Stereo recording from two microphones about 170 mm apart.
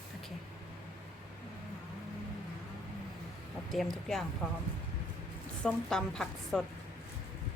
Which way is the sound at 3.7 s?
Centre (ahead or behind).